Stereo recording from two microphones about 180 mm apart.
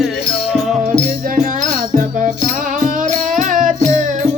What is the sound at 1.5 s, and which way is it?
Music, 50° right (ahead or behind).